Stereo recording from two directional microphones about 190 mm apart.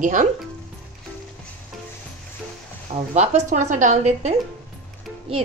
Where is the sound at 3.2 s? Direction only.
40° right (ahead or behind).